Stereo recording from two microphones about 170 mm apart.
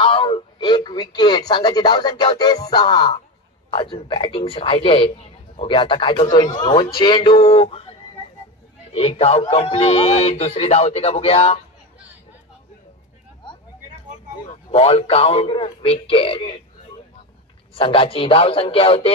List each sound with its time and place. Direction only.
0.0 s a man's voice: 30° left (ahead or behind)
8.9 s speech: 35° left (ahead or behind)
14.5 s speech: 35° left (ahead or behind)
17.7 s speech: 30° left (ahead or behind)